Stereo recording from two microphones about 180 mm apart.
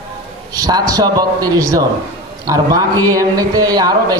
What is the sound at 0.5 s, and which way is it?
A man's voice, 20° right (ahead or behind).